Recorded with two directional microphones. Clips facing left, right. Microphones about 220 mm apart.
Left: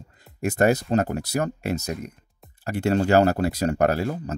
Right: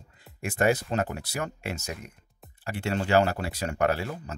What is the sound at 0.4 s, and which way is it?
Speech, 40° left (ahead or behind).